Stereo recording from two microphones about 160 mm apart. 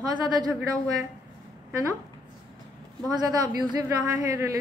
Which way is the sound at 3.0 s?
25° right (ahead or behind).